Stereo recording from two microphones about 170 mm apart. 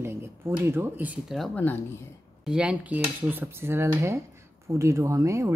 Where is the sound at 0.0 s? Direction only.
15° right (ahead or behind).